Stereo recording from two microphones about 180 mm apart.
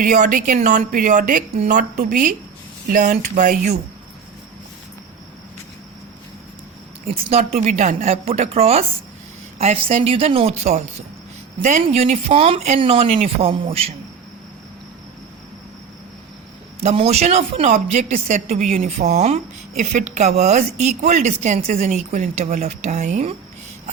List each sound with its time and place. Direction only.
0.0 s a woman's voice: 45° right (ahead or behind)
7.1 s speech: 35° right (ahead or behind)
16.8 s speech: 35° right (ahead or behind)